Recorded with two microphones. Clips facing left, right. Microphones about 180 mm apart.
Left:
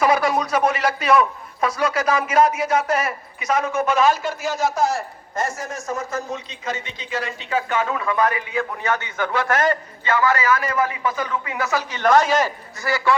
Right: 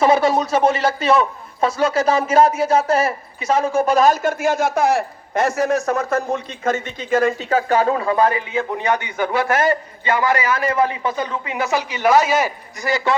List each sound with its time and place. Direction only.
0.0 s a man's voice: 25° right (ahead or behind)
10.5 s a man's voice: 30° right (ahead or behind)
11.8 s speech: 10° right (ahead or behind)